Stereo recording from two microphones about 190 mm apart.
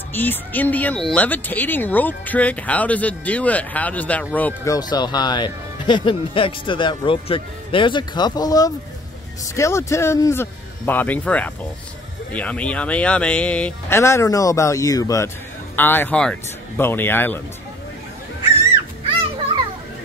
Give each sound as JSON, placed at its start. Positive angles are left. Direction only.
{"t": 0.1, "sound": "speech", "side_deg": 10}
{"t": 4.7, "sound": "speech", "side_deg": 20}